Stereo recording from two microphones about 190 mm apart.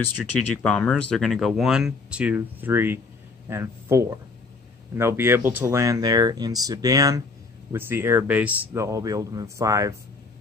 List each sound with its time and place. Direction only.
0.6 s speech: 5° left (ahead or behind); by 9.9 s 15° right (ahead or behind)